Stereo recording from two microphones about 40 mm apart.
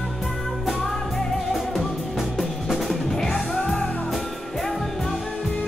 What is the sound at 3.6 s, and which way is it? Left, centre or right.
Music, left.